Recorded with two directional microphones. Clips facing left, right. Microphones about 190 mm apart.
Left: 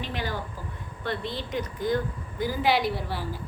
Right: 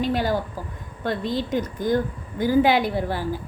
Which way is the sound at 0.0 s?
40° right (ahead or behind).